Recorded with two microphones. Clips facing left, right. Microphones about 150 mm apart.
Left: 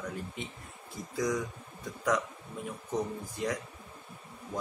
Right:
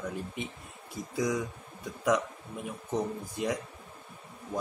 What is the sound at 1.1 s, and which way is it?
Speech, 10° right (ahead or behind).